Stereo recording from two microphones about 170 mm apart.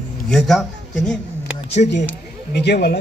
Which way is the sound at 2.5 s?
80° left.